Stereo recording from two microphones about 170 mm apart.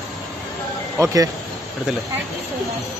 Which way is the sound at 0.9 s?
20° right (ahead or behind).